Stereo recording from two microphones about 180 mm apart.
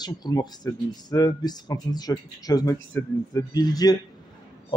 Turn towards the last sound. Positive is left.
turn(degrees=20)  # may be behind; listen again after turning